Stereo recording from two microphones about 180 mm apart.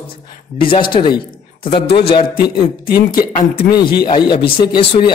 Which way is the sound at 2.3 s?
60° left (ahead or behind).